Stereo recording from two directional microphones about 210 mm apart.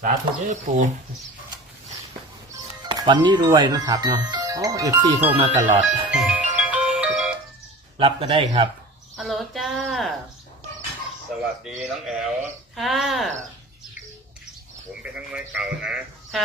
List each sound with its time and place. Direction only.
0.0 s speech: 35° right (ahead or behind)
2.9 s speech: 20° right (ahead or behind); by 6.3 s 5° right (ahead or behind)
6.6 s music: 5° right (ahead or behind)
7.9 s speech: 25° right (ahead or behind)
9.1 s speech: centre (ahead or behind)
11.8 s speech: centre (ahead or behind)
15.0 s speech: 5° right (ahead or behind)